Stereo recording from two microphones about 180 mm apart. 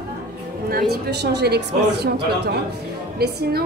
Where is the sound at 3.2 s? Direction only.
60° right (ahead or behind).